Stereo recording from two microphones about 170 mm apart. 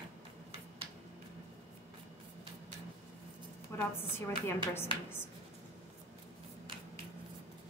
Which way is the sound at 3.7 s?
15° left (ahead or behind).